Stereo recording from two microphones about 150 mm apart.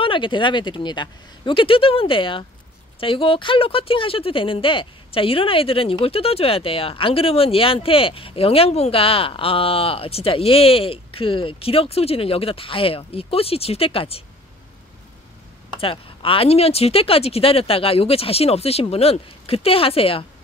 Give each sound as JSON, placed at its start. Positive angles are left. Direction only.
{"t": 0.0, "sound": "a woman's voice", "side_deg": 35}
{"t": 15.8, "sound": "a woman's voice", "side_deg": 35}